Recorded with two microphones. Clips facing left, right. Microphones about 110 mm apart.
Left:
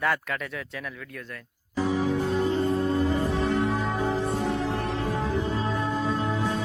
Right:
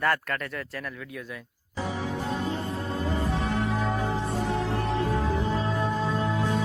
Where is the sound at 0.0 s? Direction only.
Centre (ahead or behind).